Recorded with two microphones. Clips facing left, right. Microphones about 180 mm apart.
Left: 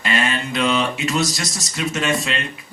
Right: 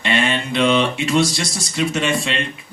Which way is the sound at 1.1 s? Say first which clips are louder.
Right 4 dB; 30° right (ahead or behind).